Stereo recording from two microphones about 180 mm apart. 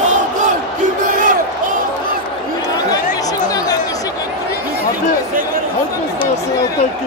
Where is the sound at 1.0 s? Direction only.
45° right (ahead or behind).